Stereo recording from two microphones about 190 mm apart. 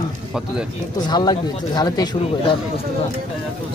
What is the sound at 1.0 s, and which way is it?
Speech, 20° left (ahead or behind).